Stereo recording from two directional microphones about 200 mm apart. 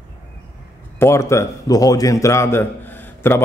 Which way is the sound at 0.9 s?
15° left (ahead or behind).